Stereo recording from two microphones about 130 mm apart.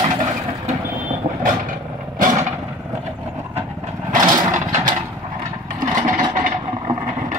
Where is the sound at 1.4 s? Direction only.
90° right.